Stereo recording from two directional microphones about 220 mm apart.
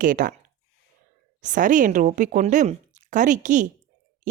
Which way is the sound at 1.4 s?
35° right (ahead or behind).